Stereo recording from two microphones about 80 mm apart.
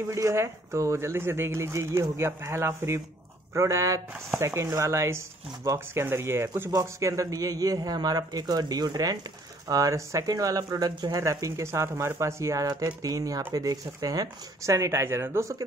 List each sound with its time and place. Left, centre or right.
0.1 s speech: right
6.7 s speech: right
9.7 s speech: right
14.6 s speech: right